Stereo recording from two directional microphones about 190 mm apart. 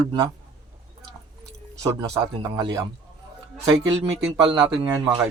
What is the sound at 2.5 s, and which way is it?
Speech, 25° right (ahead or behind).